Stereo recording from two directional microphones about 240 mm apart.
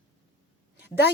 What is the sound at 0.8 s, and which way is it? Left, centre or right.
Speech, left.